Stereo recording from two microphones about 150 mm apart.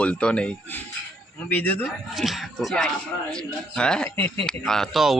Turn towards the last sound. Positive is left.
turn(degrees=0)  # may be behind; listen again after turning